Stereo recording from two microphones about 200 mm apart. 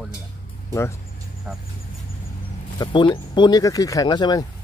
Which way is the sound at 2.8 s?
25° left (ahead or behind).